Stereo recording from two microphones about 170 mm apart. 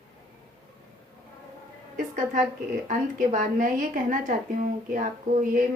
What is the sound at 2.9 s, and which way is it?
Speech, 50° right (ahead or behind).